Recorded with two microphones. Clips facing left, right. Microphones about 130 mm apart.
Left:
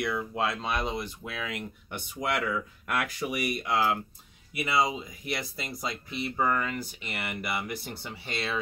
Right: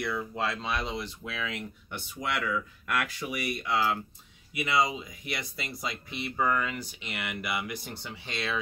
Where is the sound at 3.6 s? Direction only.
40° left (ahead or behind).